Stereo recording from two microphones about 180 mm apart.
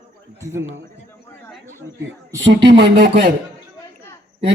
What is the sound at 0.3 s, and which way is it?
Speech, 15° right (ahead or behind).